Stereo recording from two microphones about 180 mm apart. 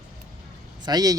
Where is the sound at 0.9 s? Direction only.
20° right (ahead or behind).